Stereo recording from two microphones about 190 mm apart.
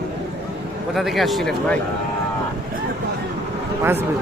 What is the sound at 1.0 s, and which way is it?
Speech, centre (ahead or behind).